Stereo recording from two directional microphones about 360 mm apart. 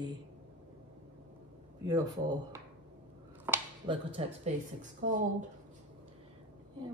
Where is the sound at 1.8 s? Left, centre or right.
Centre.